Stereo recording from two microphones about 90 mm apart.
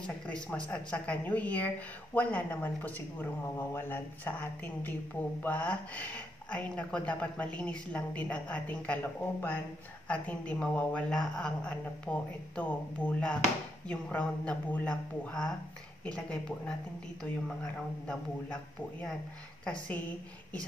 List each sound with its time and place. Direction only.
0.0 s a woman's voice: 10° left (ahead or behind)
18.0 s speech: 10° left (ahead or behind)